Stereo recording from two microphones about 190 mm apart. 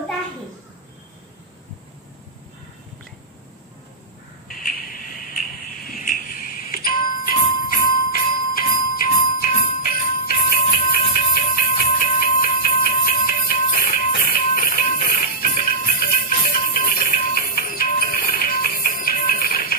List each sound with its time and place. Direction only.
5.9 s doorbell: 45° left (ahead or behind)
8.5 s jingle bell: 50° left (ahead or behind)
13.8 s music: 50° left (ahead or behind)